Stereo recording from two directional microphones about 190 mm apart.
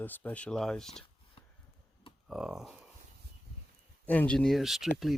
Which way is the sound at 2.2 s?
5° right (ahead or behind).